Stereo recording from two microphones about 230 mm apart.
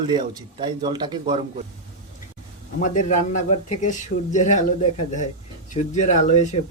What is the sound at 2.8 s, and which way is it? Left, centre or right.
Speech, left.